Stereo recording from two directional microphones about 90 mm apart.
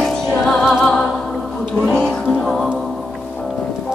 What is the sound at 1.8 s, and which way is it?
Music, 10° left (ahead or behind).